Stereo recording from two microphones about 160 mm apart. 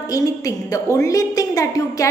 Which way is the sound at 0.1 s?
20° left (ahead or behind).